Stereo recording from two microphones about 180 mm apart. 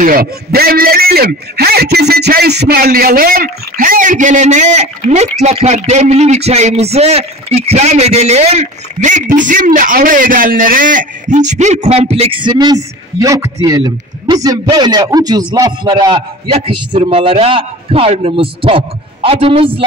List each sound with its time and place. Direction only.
0.0 s a man's voice: 55° right (ahead or behind); by 19.8 s 30° right (ahead or behind)